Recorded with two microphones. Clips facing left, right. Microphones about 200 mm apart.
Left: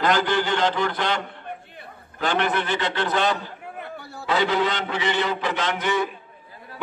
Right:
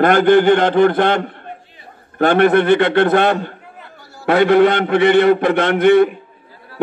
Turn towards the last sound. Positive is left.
turn(degrees=-60)  # may be behind; listen again after turning